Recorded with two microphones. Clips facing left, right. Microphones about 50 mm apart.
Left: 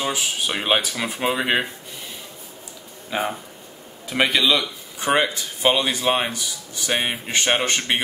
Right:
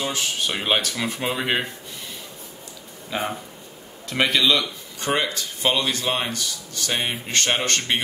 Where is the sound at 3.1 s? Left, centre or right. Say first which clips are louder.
Left 2 dB; centre.